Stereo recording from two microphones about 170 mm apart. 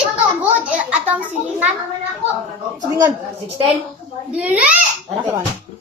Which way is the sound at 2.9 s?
25° right (ahead or behind).